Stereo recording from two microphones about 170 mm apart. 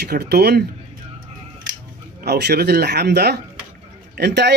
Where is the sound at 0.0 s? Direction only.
65° right (ahead or behind).